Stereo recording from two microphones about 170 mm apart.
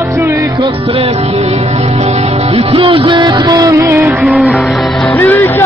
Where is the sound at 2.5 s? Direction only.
35° right (ahead or behind); by 4.1 s 15° right (ahead or behind).